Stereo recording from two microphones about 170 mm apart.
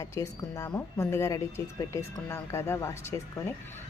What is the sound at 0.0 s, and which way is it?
A woman's voice, 20° left (ahead or behind).